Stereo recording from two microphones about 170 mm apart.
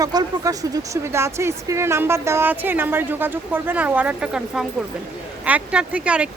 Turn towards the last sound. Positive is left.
turn(degrees=-5)  # may be behind; listen again after turning